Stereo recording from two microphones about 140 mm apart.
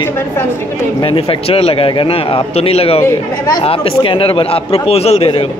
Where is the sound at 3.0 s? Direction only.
25° left (ahead or behind).